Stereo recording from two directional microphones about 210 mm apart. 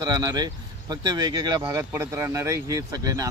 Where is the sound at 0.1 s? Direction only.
20° right (ahead or behind).